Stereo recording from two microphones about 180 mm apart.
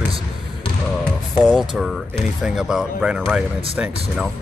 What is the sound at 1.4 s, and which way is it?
A man's voice, centre (ahead or behind).